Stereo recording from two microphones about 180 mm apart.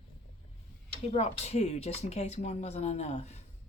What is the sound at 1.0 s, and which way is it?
Speech, 35° left (ahead or behind).